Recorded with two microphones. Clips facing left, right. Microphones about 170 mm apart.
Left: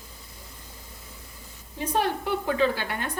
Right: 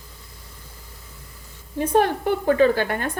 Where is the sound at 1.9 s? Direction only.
50° right (ahead or behind).